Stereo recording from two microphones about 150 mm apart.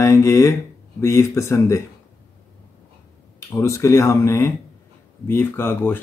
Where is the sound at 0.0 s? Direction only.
20° left (ahead or behind).